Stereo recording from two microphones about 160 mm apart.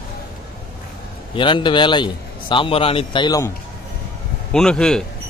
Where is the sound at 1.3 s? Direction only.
30° left (ahead or behind).